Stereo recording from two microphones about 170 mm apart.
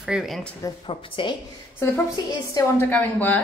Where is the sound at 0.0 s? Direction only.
5° right (ahead or behind).